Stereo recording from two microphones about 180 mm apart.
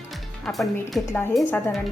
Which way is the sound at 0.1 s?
Centre (ahead or behind).